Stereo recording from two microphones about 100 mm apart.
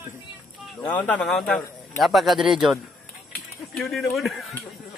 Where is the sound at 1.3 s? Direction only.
5° left (ahead or behind).